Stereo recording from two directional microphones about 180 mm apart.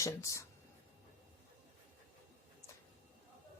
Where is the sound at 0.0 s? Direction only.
15° left (ahead or behind).